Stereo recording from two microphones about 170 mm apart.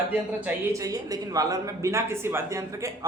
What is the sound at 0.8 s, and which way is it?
Speech, 20° right (ahead or behind).